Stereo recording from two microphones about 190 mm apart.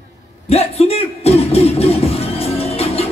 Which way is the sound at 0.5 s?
30° left (ahead or behind).